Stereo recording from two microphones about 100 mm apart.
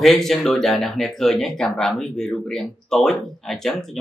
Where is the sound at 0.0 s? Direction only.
5° left (ahead or behind).